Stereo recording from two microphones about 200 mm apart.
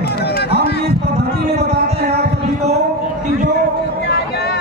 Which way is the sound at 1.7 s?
30° right (ahead or behind).